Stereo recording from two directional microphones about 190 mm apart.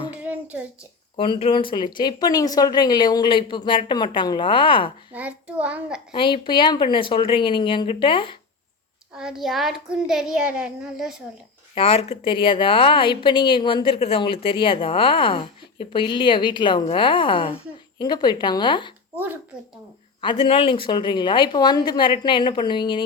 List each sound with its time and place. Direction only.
0.2 s a sound: 10° right (ahead or behind)
1.1 s a woman's voice: 25° left (ahead or behind)
5.1 s a child's voice: 5° right (ahead or behind)
6.1 s a woman's voice: 25° left (ahead or behind)
9.1 s a child's voice: centre (ahead or behind)
11.7 s a woman's voice: 30° left (ahead or behind)
19.1 s a woman's voice: 10° right (ahead or behind)
20.2 s a woman's voice: 30° left (ahead or behind)